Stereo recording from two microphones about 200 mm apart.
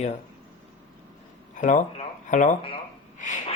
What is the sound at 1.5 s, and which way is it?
Speech, 40° left (ahead or behind).